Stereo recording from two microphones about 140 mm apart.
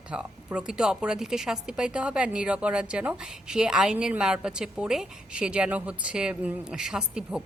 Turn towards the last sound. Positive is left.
turn(degrees=-5)  # may be behind; listen again after turning